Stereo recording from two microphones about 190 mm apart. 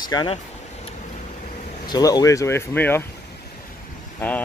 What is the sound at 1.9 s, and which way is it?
Speech, 20° left (ahead or behind).